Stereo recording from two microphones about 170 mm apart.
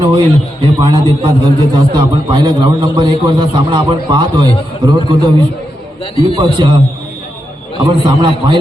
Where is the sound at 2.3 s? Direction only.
25° right (ahead or behind).